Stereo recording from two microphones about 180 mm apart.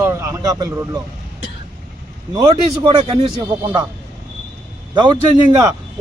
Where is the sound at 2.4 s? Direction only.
30° right (ahead or behind).